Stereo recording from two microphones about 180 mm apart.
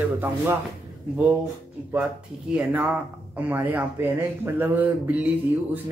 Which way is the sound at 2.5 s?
5° right (ahead or behind).